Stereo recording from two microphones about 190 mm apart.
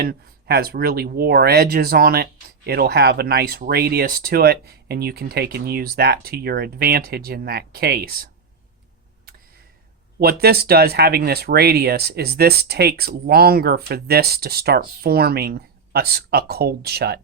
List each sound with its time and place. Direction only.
0.0 s speech: 55° right (ahead or behind)
10.2 s speech: 55° right (ahead or behind)